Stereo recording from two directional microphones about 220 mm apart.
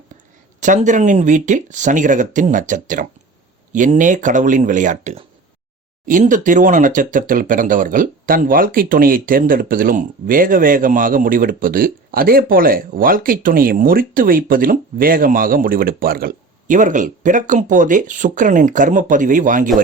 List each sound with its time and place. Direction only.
0.6 s speech: 35° right (ahead or behind)